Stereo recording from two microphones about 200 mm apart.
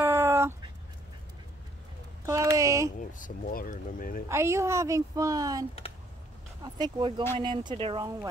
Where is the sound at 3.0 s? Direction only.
40° left (ahead or behind).